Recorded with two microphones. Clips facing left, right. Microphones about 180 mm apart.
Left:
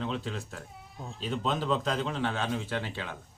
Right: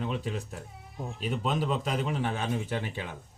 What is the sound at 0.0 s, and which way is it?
Speech, 10° right (ahead or behind).